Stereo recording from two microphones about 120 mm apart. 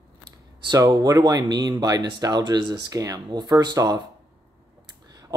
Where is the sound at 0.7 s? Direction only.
35° right (ahead or behind).